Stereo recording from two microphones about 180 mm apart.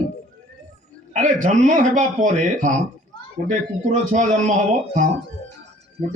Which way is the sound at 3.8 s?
45° right (ahead or behind).